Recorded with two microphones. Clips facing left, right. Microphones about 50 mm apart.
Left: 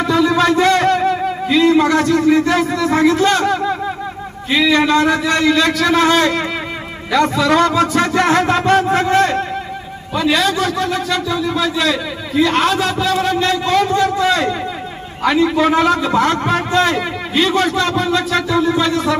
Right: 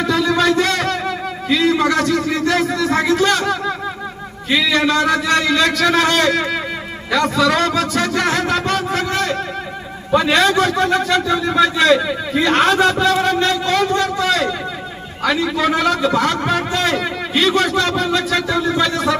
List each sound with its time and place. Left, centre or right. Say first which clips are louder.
0.0 s a sound: left 2 dB; centre
4.5 s a man's voice: left 2 dB; centre; by 9.4 s left
10.1 s a man's voice: right 2 dB; centre